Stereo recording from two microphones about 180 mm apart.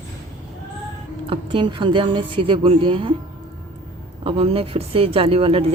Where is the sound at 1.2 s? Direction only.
25° right (ahead or behind).